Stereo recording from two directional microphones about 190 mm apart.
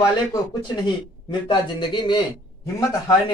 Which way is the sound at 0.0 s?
20° left (ahead or behind).